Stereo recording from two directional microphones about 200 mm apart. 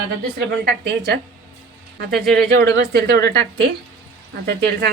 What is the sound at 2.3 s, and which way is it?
A woman's voice, 50° right (ahead or behind).